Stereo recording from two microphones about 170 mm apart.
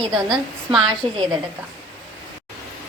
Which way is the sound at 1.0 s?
35° right (ahead or behind).